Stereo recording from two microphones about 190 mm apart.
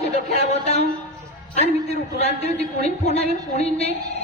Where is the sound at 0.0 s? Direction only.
35° left (ahead or behind).